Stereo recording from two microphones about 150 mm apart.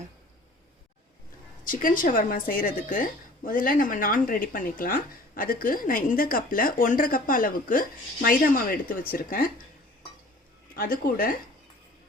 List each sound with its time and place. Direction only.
1.6 s a woman's voice: 65° left (ahead or behind)
10.8 s a woman's voice: 70° left (ahead or behind)